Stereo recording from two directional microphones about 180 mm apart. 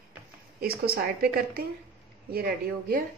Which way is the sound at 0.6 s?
55° right (ahead or behind).